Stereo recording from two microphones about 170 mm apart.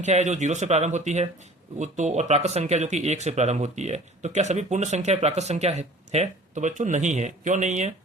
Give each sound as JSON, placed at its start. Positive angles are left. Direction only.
{"t": 0.0, "sound": "speech", "side_deg": -45}